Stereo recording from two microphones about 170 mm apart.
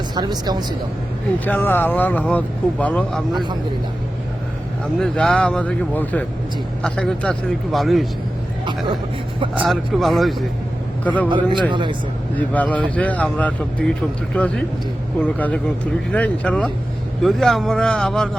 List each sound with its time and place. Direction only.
0.1 s speech: 25° right (ahead or behind)
1.5 s speech: 10° left (ahead or behind)
4.9 s a man's voice: 5° left (ahead or behind)
9.6 s a man's voice: centre (ahead or behind)
11.3 s speech: 30° right (ahead or behind)
12.4 s a man's voice: 10° left (ahead or behind)